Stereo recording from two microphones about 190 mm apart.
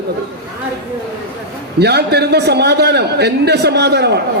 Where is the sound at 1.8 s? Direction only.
60° right (ahead or behind).